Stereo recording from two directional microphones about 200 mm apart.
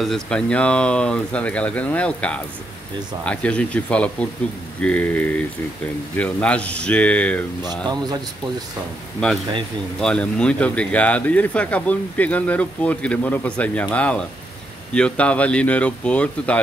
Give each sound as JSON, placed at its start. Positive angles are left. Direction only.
{"t": 0.0, "sound": "speech", "side_deg": 5}
{"t": 7.6, "sound": "speech", "side_deg": -20}
{"t": 9.9, "sound": "speech", "side_deg": 5}